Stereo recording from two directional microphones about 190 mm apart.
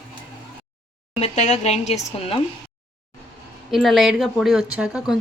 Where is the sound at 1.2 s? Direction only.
35° left (ahead or behind).